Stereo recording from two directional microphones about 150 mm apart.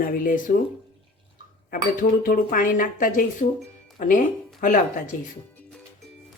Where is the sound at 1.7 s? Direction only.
70° left (ahead or behind).